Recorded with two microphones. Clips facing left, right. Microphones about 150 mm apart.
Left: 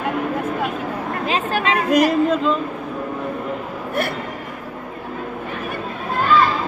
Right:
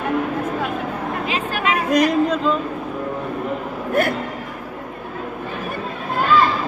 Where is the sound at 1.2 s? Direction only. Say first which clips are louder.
Left 3 dB; 30° left (ahead or behind).